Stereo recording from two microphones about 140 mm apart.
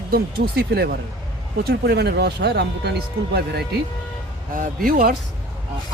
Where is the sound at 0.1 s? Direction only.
90° right.